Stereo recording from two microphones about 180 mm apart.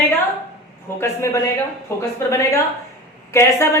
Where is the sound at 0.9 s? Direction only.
15° left (ahead or behind).